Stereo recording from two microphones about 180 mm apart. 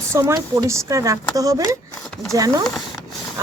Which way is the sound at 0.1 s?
15° right (ahead or behind).